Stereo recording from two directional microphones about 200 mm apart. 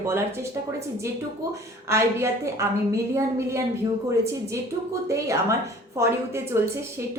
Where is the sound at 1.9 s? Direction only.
15° right (ahead or behind).